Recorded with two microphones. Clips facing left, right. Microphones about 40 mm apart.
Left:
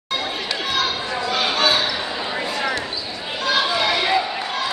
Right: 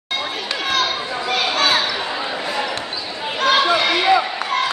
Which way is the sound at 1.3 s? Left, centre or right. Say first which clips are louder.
Right 2 dB; right.